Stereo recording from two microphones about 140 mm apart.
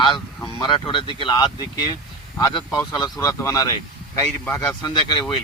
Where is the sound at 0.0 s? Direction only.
35° left (ahead or behind).